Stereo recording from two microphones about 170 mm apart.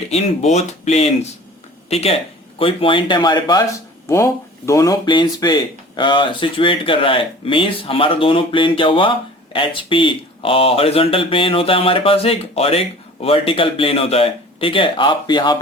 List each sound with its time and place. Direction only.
0.1 s speech: 40° left (ahead or behind)